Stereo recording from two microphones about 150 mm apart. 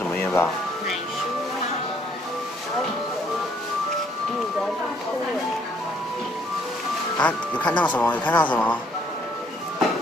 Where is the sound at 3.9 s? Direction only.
Centre (ahead or behind).